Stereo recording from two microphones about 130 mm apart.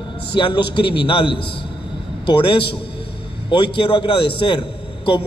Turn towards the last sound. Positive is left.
turn(degrees=40)  # may be behind; listen again after turning